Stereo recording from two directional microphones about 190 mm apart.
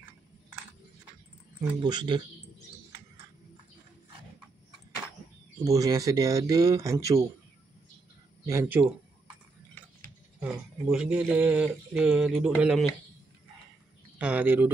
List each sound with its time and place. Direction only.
1.8 s speech: 25° right (ahead or behind)
5.6 s speech: 15° right (ahead or behind)
8.5 s speech: 15° right (ahead or behind)
10.4 s speech: 5° right (ahead or behind)
14.1 s speech: 10° right (ahead or behind)